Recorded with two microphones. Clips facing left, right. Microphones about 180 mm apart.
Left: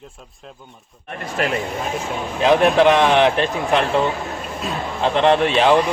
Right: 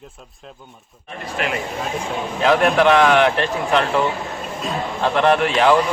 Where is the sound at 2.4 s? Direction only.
20° left (ahead or behind).